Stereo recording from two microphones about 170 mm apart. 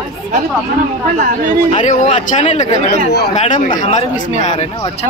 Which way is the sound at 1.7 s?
45° left (ahead or behind).